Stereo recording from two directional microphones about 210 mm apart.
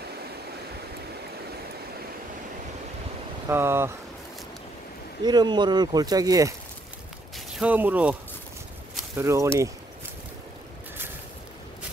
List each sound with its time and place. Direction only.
3.4 s speech: 10° right (ahead or behind)
5.2 s speech: 20° right (ahead or behind)
7.3 s speech: 5° right (ahead or behind)